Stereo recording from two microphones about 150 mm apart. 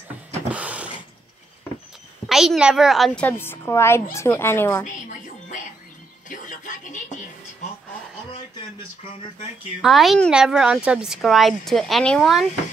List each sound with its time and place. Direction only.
0.5 s mechanisms: 10° right (ahead or behind)
2.2 s a woman's voice: centre (ahead or behind)
3.3 s a woman's voice: 15° left (ahead or behind)
4.8 s music: 55° left (ahead or behind)
9.8 s a woman's voice: centre (ahead or behind)